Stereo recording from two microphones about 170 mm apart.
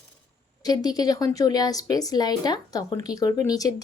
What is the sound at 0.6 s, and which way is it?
Speech, 25° left (ahead or behind).